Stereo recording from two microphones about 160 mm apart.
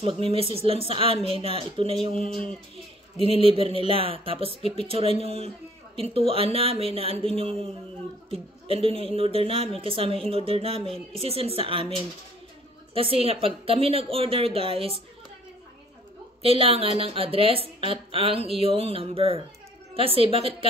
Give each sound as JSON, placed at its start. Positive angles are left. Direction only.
{"t": 0.0, "sound": "speech", "side_deg": -35}
{"t": 12.9, "sound": "speech", "side_deg": -35}
{"t": 16.4, "sound": "speech", "side_deg": -35}